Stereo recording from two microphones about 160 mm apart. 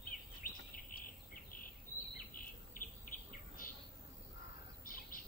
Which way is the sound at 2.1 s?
60° left (ahead or behind).